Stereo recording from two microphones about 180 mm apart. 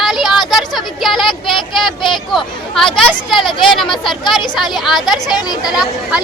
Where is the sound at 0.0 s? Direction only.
Centre (ahead or behind).